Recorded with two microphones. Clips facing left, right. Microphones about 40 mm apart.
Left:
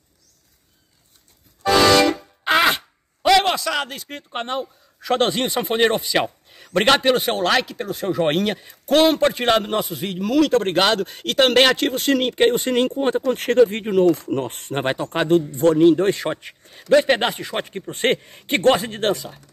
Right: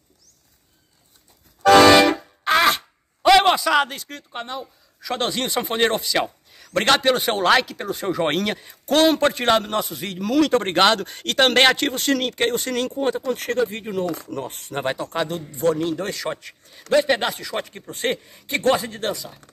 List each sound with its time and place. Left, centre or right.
1.6 s music: right
2.0 s music: right
2.4 s a sound: centre
3.3 s a sound: centre
4.4 s speech: left
5.5 s speech: centre
6.2 s speech: left; by 7.3 s centre
7.3 s speech: centre; by 14.8 s left
14.8 s a man's voice: left